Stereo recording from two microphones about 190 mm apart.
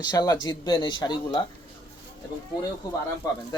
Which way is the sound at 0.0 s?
20° left (ahead or behind).